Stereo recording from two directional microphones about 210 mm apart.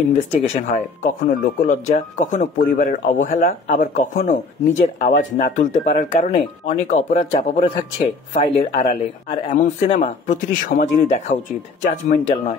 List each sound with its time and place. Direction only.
0.3 s speech: 35° left (ahead or behind)